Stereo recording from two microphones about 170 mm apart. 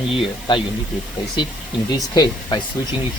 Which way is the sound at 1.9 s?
25° left (ahead or behind).